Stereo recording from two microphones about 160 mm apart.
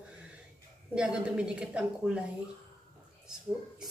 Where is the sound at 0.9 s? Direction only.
5° right (ahead or behind).